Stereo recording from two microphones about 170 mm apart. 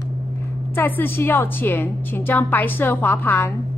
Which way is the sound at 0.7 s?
10° left (ahead or behind).